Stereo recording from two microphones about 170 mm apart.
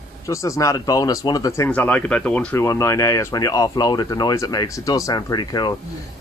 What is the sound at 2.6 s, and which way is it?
Speech, 20° left (ahead or behind).